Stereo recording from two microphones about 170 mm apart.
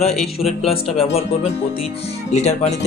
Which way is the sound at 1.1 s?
40° left (ahead or behind).